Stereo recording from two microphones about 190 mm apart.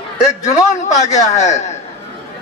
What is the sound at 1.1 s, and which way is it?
Speech, 35° left (ahead or behind).